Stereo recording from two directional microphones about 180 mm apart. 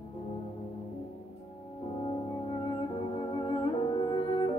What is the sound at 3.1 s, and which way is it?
Music, 30° left (ahead or behind).